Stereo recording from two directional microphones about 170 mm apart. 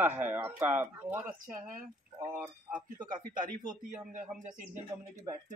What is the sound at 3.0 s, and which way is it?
Speech, 50° right (ahead or behind).